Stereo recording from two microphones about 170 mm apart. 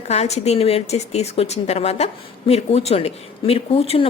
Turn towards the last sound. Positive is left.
turn(degrees=35)  # may be behind; listen again after turning